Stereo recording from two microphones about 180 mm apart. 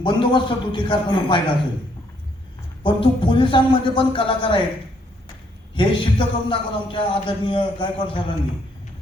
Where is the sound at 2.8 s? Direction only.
25° left (ahead or behind).